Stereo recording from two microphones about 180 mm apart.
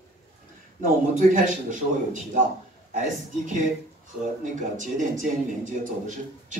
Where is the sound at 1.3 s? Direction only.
45° right (ahead or behind).